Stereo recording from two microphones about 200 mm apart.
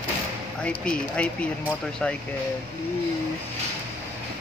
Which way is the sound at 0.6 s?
5° left (ahead or behind).